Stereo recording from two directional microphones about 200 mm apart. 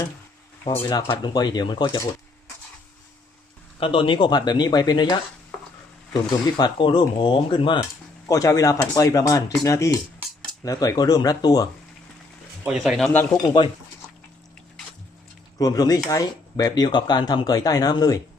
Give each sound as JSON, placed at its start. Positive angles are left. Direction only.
{"t": 0.6, "sound": "speech", "side_deg": 15}
{"t": 3.8, "sound": "speech", "side_deg": 25}
{"t": 6.3, "sound": "speech", "side_deg": 20}
{"t": 12.6, "sound": "speech", "side_deg": 0}
{"t": 13.4, "sound": "speech", "side_deg": 20}
{"t": 15.5, "sound": "speech", "side_deg": 20}